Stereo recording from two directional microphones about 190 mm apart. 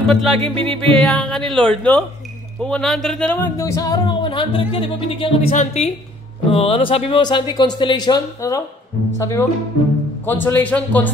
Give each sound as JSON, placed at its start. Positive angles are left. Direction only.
{"t": 0.0, "sound": "speech", "side_deg": 0}
{"t": 5.5, "sound": "a woman's voice", "side_deg": 40}